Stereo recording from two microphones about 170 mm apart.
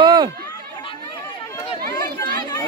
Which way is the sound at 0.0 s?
25° right (ahead or behind).